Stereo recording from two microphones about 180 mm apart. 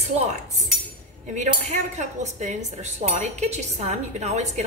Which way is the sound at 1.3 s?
40° right (ahead or behind).